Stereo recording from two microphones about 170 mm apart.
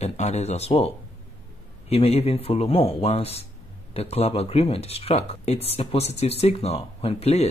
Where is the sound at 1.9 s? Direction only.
35° left (ahead or behind).